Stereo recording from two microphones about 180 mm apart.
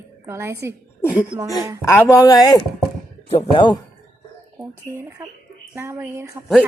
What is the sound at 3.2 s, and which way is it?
Speech, 35° left (ahead or behind).